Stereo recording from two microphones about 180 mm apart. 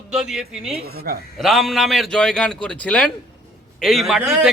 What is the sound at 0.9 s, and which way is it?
Speech, 60° right (ahead or behind).